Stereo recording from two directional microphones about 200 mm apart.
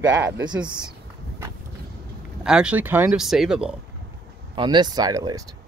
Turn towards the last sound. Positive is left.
turn(degrees=-15)  # may be behind; listen again after turning